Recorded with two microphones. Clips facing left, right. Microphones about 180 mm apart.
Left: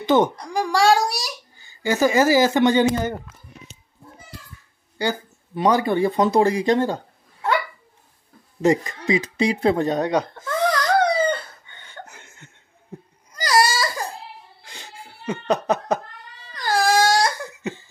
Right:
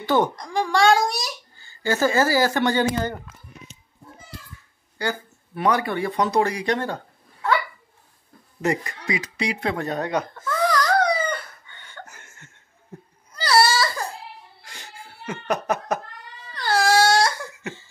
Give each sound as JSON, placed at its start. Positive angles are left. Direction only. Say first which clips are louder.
{"t": 0.0, "sound": "a child's voice", "louder": "left 3 dB", "side_deg": 20}
{"t": 0.4, "sound": "a child's voice", "louder": "even", "side_deg": 10}
{"t": 4.9, "sound": "speech", "louder": "left 3 dB", "side_deg": 20}
{"t": 8.5, "sound": "speech", "louder": "left 6 dB", "side_deg": 25}
{"t": 11.9, "sound": "chuckle", "louder": "left 2 dB", "side_deg": 15}
{"t": 13.3, "sound": "baby cry", "louder": "even", "side_deg": 15}
{"t": 14.7, "sound": "laughter", "louder": "left 2 dB", "side_deg": 20}
{"t": 16.5, "sound": "crying", "louder": "even", "side_deg": 15}